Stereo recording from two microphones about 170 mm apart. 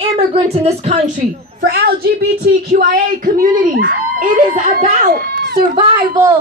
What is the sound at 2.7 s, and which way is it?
Speech, 50° right (ahead or behind).